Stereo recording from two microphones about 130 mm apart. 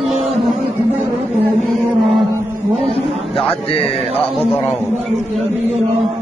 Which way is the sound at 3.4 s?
45° left (ahead or behind).